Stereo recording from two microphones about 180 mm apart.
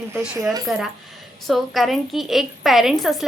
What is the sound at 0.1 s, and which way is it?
Speech, 15° right (ahead or behind).